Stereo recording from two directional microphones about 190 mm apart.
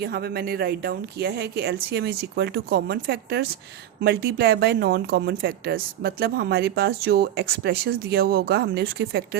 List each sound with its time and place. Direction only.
0.0 s speech: 55° right (ahead or behind)